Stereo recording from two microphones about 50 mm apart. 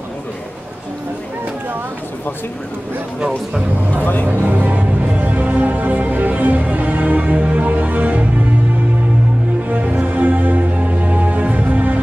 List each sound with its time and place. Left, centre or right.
4.0 s speech: left
4.3 s music: right
9.7 s music: right